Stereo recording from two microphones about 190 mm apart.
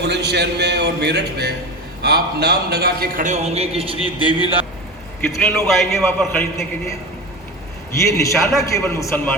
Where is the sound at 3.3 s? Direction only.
35° right (ahead or behind).